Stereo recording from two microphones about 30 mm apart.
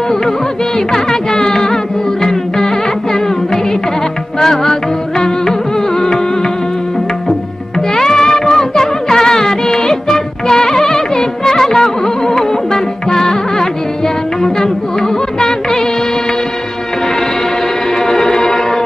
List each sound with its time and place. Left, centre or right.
0.7 s music: left
4.4 s music: centre
7.9 s music: left
17.9 s music: left